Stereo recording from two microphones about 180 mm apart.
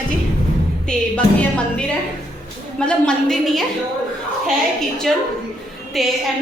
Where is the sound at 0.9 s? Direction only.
5° left (ahead or behind).